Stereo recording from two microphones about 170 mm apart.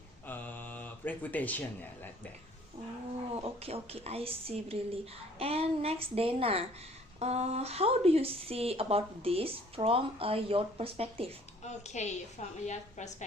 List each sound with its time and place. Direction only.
0.3 s a sound: 10° left (ahead or behind)
3.3 s speech: 35° right (ahead or behind)
11.6 s a woman's voice: 40° left (ahead or behind)